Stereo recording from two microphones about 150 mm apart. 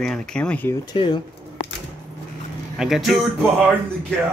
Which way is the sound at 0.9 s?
30° left (ahead or behind).